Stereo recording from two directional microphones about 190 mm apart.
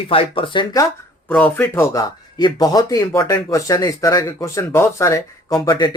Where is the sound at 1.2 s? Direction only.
10° left (ahead or behind).